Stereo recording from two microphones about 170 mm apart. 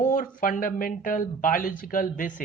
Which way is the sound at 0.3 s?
55° left (ahead or behind).